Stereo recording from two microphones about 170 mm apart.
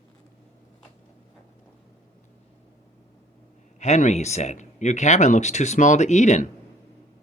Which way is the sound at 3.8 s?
45° left (ahead or behind).